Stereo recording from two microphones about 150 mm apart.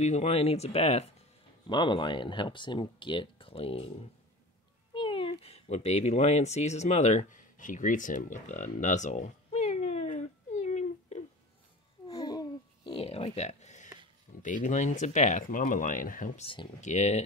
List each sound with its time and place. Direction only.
0.0 s speech: 50° left (ahead or behind)
1.7 s speech: 30° left (ahead or behind)
4.9 s cat: 35° left (ahead or behind); by 11.2 s 50° left (ahead or behind)
12.1 s babbling: 25° left (ahead or behind)
12.9 s a sound: 40° left (ahead or behind)
14.4 s speech: 55° left (ahead or behind)
16.3 s speech: 35° left (ahead or behind)
16.8 s speech: 50° left (ahead or behind)